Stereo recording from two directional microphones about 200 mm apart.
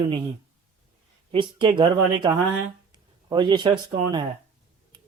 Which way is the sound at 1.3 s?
25° right (ahead or behind).